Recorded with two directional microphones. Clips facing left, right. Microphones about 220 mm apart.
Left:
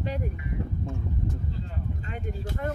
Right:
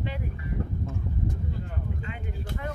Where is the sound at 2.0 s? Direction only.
45° left (ahead or behind).